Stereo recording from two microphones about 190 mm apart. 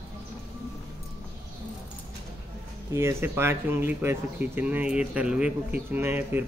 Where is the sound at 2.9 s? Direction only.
15° right (ahead or behind).